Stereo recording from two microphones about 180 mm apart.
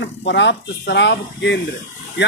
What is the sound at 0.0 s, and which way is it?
A man's voice, 75° left (ahead or behind).